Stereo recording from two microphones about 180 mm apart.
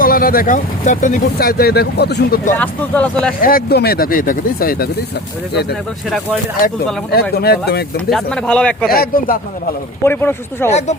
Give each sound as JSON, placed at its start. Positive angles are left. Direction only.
{"t": 0.0, "sound": "speech", "side_deg": 55}
{"t": 2.6, "sound": "speech", "side_deg": 10}
{"t": 3.4, "sound": "speech", "side_deg": 55}
{"t": 7.1, "sound": "speech", "side_deg": 60}
{"t": 8.1, "sound": "speech", "side_deg": 5}
{"t": 8.9, "sound": "speech", "side_deg": 55}
{"t": 10.0, "sound": "speech", "side_deg": 10}
{"t": 10.7, "sound": "speech", "side_deg": 40}